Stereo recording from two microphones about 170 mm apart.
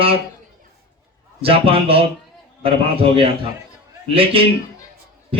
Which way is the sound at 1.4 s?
35° right (ahead or behind).